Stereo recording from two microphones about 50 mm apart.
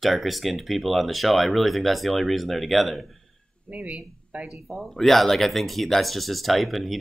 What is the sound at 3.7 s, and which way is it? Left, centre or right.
Speech, right.